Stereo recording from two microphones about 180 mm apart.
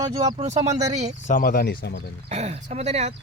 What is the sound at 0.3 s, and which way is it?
Speech, 40° right (ahead or behind).